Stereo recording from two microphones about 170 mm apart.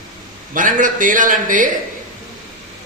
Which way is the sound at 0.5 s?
50° right (ahead or behind).